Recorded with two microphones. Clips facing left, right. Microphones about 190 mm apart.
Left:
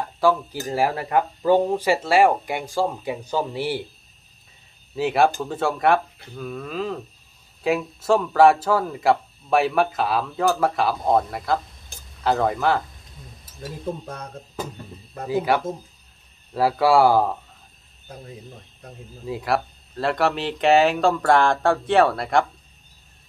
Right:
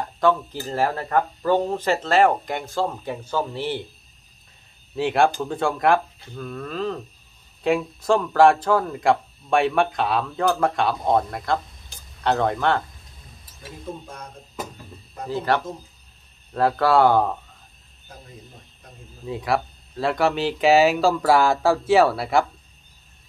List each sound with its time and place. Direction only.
0.2 s speech: 5° left (ahead or behind)
4.9 s speech: centre (ahead or behind)
15.2 s speech: 10° left (ahead or behind)
19.2 s speech: centre (ahead or behind)